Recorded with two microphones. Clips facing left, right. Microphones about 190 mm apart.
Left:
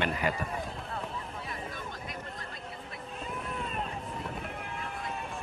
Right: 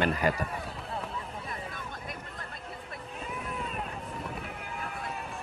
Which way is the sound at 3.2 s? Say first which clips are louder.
Even; centre (ahead or behind).